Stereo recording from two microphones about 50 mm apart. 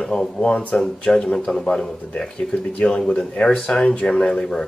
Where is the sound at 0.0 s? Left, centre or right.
Centre.